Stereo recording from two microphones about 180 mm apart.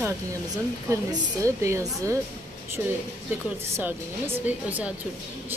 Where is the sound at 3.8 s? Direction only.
10° right (ahead or behind).